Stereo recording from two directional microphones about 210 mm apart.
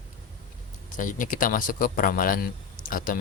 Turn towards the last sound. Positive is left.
turn(degrees=40)  # may be behind; listen again after turning